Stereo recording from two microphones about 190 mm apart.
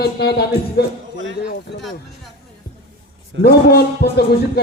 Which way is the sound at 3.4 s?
55° left (ahead or behind).